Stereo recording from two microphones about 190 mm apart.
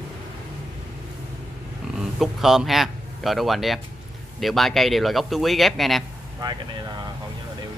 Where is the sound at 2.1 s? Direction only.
Centre (ahead or behind).